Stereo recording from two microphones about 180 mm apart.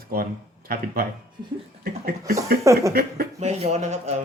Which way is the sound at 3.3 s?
35° right (ahead or behind).